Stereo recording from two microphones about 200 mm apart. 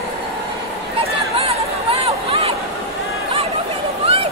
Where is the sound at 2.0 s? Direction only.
30° right (ahead or behind).